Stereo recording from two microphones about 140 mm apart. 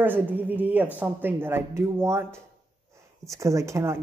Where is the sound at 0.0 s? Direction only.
15° right (ahead or behind).